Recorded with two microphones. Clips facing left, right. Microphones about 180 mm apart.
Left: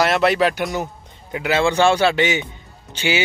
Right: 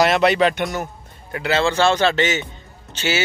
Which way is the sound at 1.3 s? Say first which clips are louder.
Left 1 dB; 15° left (ahead or behind).